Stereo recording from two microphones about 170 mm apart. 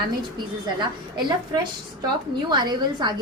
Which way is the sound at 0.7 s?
25° right (ahead or behind).